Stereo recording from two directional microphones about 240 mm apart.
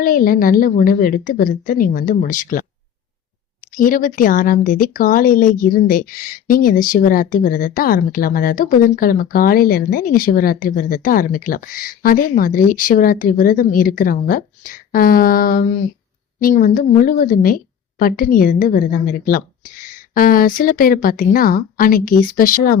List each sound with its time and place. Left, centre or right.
0.0 s speech: left